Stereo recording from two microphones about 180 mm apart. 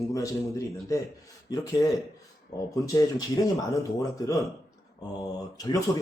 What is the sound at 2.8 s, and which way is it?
Speech, 20° left (ahead or behind).